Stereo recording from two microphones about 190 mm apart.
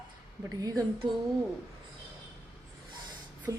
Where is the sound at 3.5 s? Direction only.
20° right (ahead or behind).